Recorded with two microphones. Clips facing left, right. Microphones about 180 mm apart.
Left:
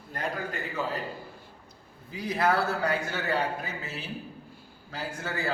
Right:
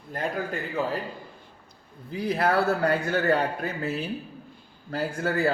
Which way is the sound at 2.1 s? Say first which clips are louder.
Right 3 dB; 55° right (ahead or behind).